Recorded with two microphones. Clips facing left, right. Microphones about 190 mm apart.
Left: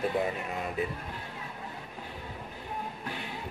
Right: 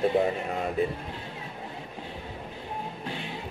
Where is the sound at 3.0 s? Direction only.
25° right (ahead or behind).